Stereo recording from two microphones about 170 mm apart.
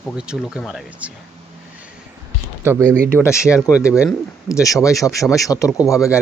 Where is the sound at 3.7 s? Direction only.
5° right (ahead or behind).